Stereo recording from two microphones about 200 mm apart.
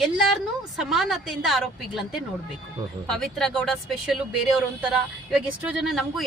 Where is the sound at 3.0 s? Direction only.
Centre (ahead or behind).